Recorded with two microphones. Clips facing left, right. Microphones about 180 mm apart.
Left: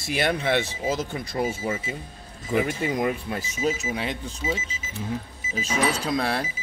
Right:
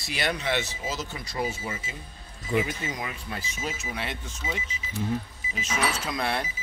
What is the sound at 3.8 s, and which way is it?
Speech, 35° left (ahead or behind).